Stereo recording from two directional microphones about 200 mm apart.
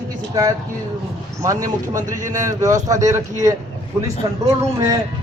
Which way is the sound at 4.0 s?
15° right (ahead or behind).